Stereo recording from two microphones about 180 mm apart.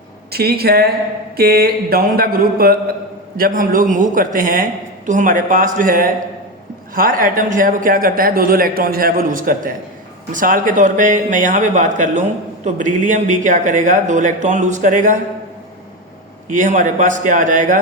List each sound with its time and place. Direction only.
0.3 s speech: 60° right (ahead or behind)
1.4 s mantra: 60° right (ahead or behind)
3.3 s a man's voice: 50° right (ahead or behind)
16.5 s a man's voice: 45° right (ahead or behind)